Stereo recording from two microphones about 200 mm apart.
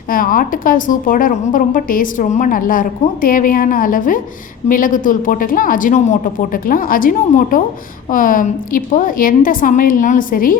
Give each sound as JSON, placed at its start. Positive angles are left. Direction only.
{"t": 0.1, "sound": "a woman's voice", "side_deg": 45}